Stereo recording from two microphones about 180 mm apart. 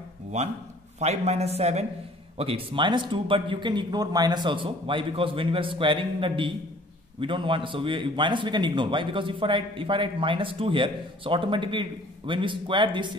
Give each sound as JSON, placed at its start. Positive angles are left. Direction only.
{"t": 0.3, "sound": "a man's voice", "side_deg": -40}